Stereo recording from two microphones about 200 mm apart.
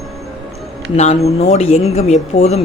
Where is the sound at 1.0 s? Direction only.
35° left (ahead or behind).